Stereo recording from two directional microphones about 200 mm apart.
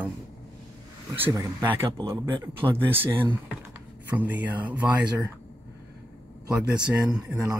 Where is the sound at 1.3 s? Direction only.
15° right (ahead or behind).